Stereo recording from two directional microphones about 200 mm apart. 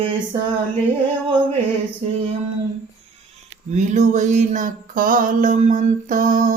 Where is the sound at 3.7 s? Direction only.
35° right (ahead or behind).